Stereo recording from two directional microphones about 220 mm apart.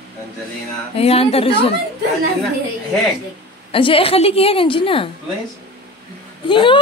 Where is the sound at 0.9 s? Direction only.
25° left (ahead or behind).